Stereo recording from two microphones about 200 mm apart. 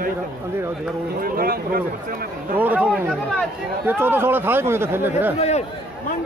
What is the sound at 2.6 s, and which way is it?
Speech, 5° right (ahead or behind).